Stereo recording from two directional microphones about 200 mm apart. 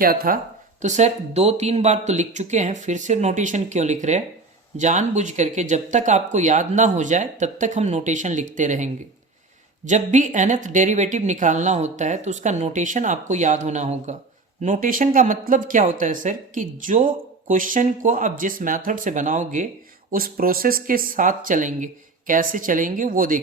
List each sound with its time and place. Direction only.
0.0 s speech: 45° right (ahead or behind)
0.8 s speech: 35° right (ahead or behind)